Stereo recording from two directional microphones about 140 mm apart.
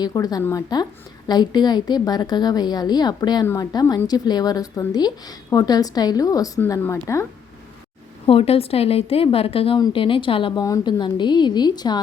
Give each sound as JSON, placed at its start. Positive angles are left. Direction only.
{"t": 0.0, "sound": "speech", "side_deg": 25}
{"t": 8.3, "sound": "a woman's voice", "side_deg": 45}
{"t": 10.6, "sound": "speech", "side_deg": 25}